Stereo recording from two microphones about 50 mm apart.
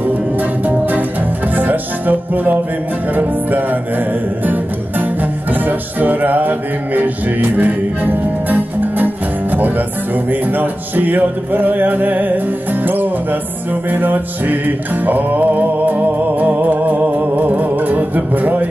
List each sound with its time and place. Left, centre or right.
0.0 s music: right